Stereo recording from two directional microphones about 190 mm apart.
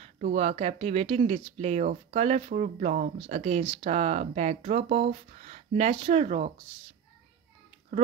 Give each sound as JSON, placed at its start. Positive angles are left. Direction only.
{"t": 0.0, "sound": "speech", "side_deg": -35}